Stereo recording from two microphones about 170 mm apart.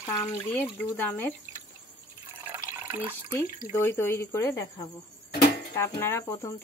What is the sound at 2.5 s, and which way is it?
Water, 10° right (ahead or behind).